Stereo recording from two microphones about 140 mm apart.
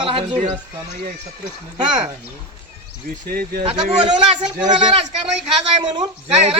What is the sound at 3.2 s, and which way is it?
Speech, 90° right.